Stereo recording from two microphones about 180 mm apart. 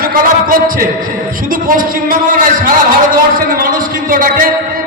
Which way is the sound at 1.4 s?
50° right (ahead or behind).